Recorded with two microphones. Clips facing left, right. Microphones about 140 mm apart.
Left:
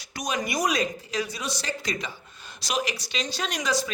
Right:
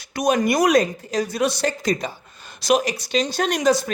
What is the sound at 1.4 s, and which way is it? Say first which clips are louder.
A woman's voice: right 11 dB; 60° right (ahead or behind).